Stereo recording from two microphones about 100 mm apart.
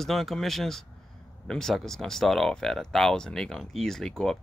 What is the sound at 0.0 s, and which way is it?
Speech, centre (ahead or behind).